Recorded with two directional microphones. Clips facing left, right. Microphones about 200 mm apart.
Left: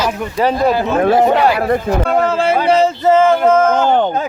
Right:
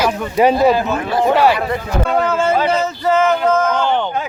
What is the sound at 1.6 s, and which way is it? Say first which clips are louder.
Speech: left 5 dB; 50° left (ahead or behind).